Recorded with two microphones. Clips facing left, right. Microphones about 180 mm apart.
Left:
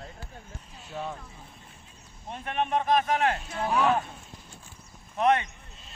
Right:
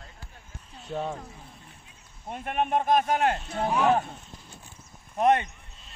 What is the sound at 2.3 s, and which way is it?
Speech, 45° right (ahead or behind).